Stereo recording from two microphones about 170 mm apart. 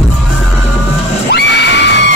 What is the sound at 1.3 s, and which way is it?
Screaming, 90° left.